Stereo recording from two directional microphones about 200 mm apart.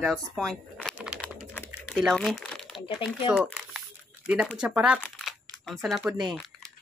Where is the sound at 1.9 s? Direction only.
Centre (ahead or behind).